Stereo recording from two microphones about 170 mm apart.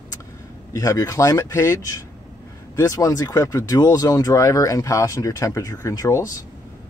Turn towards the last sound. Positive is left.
turn(degrees=20)  # may be behind; listen again after turning